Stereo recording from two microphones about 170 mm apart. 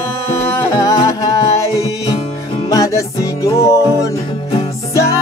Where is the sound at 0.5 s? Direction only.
20° left (ahead or behind).